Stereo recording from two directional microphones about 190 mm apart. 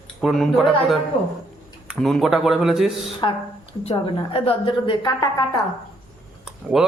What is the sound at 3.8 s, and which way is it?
A woman's voice, 30° left (ahead or behind).